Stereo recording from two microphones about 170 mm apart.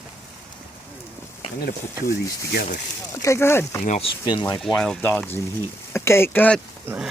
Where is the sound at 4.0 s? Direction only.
25° left (ahead or behind).